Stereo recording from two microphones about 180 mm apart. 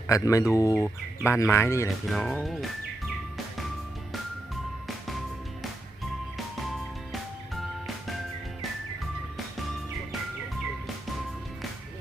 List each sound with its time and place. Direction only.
0.1 s speech: 20° left (ahead or behind)
2.0 s speech: centre (ahead or behind)